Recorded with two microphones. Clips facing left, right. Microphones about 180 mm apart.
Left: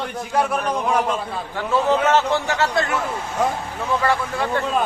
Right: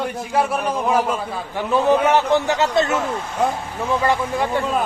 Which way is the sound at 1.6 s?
15° right (ahead or behind).